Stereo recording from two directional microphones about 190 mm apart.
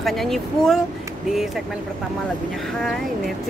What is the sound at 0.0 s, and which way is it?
Speech, centre (ahead or behind).